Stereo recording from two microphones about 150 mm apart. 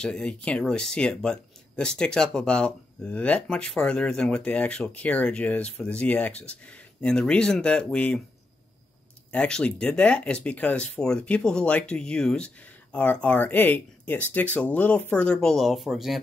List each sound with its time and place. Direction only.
0.0 s speech: 5° left (ahead or behind)
9.3 s speech: 5° left (ahead or behind)